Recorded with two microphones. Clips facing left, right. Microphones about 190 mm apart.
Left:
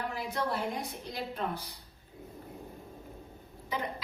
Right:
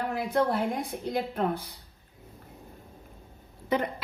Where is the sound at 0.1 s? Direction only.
55° right (ahead or behind).